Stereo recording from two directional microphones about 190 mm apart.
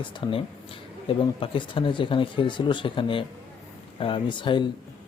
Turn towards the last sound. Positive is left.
turn(degrees=25)  # may be behind; listen again after turning